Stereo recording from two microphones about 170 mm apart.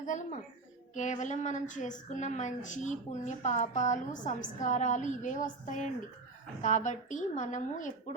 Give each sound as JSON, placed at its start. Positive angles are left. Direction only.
{"t": 0.0, "sound": "a woman's voice", "side_deg": 45}